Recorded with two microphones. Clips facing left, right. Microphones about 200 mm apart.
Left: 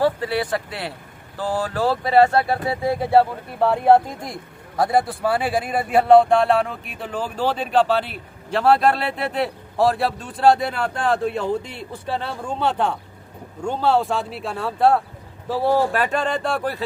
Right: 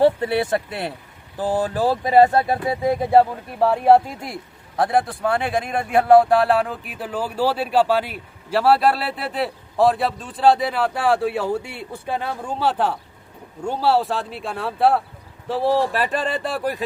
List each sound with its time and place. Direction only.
0.0 s a man's voice: 25° right (ahead or behind); by 16.6 s 5° right (ahead or behind)